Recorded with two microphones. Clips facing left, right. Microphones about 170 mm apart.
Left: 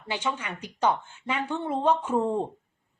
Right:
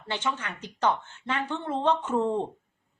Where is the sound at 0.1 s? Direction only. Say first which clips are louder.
Left 1 dB; 10° left (ahead or behind).